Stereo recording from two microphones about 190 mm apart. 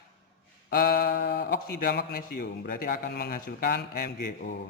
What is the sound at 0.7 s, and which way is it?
Speech, 50° left (ahead or behind).